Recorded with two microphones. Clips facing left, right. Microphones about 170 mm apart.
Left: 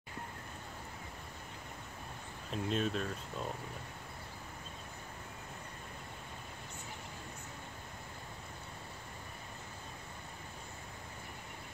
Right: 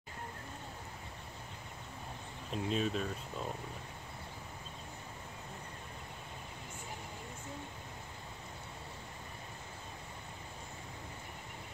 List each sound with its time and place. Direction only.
2.5 s speech: centre (ahead or behind)